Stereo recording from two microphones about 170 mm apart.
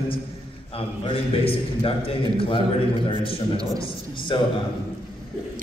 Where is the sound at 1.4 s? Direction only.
35° left (ahead or behind).